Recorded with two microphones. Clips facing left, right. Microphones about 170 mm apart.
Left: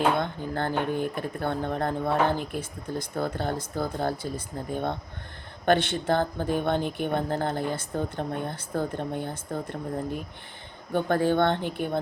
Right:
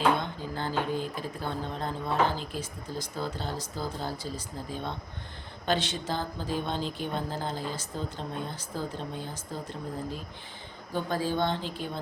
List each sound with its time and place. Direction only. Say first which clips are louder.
0.2 s speech: left 5 dB; 55° left (ahead or behind)